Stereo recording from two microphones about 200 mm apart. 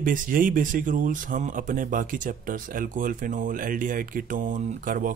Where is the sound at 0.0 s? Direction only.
45° right (ahead or behind).